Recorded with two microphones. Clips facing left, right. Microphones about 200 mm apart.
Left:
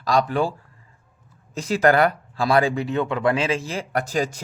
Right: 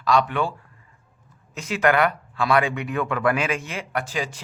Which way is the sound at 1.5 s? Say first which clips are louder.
Left 3 dB; 35° left (ahead or behind).